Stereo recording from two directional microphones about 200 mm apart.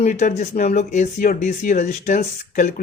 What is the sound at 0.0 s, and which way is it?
Speech, 35° left (ahead or behind).